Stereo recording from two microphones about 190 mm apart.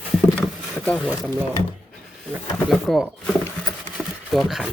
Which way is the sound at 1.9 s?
Centre (ahead or behind).